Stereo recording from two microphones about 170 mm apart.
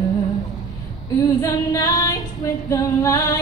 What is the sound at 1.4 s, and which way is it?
Female singing, 20° left (ahead or behind).